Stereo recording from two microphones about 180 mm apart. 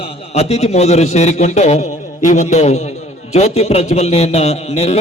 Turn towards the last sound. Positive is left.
turn(degrees=35)  # may be behind; listen again after turning